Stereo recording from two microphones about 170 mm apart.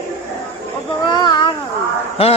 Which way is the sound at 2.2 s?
35° left (ahead or behind).